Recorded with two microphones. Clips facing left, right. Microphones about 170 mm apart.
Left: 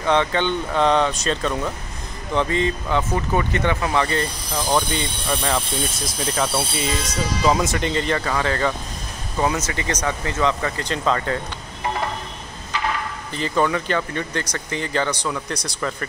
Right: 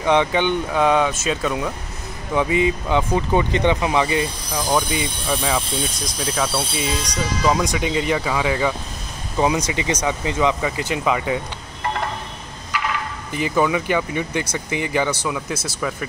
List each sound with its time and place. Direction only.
0.0 s speech: 15° right (ahead or behind)
13.3 s speech: 10° right (ahead or behind)